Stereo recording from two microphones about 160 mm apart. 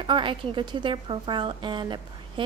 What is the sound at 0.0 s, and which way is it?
A woman's voice, 30° right (ahead or behind).